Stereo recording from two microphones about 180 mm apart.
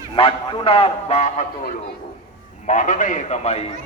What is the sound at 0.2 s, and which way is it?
A man's voice, 30° left (ahead or behind).